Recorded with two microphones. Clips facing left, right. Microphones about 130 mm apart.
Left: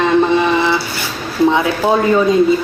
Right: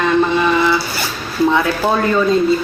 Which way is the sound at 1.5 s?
15° left (ahead or behind).